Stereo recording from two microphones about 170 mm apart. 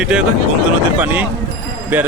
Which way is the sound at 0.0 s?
5° right (ahead or behind).